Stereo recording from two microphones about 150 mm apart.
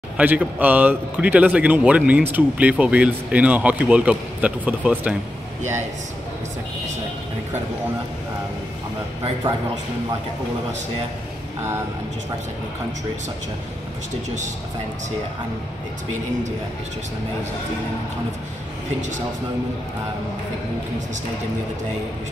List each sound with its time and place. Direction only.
0.2 s speech: 10° right (ahead or behind)